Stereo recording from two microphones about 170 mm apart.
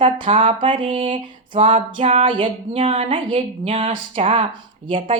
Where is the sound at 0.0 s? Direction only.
30° right (ahead or behind).